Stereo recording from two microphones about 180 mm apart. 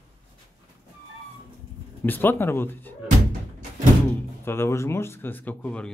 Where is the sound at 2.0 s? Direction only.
10° left (ahead or behind).